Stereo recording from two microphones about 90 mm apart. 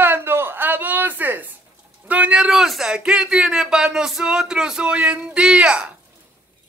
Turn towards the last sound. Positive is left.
turn(degrees=-10)  # may be behind; listen again after turning